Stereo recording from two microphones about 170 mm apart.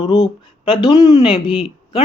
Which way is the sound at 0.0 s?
25° left (ahead or behind).